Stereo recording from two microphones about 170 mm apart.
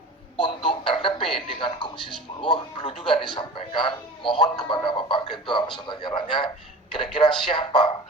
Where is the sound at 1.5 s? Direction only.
30° left (ahead or behind).